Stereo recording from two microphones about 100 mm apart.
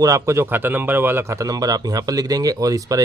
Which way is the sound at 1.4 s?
40° right (ahead or behind).